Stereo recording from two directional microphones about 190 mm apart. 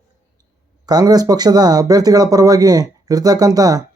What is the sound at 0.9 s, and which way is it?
A man's voice, 20° right (ahead or behind).